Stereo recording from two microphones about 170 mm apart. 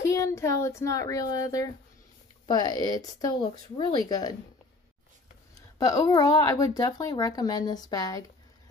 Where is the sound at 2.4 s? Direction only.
25° left (ahead or behind).